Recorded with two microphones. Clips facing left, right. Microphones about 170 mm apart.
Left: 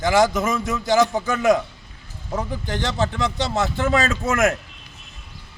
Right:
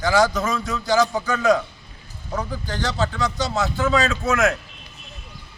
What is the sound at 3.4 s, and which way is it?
Speech, 55° left (ahead or behind).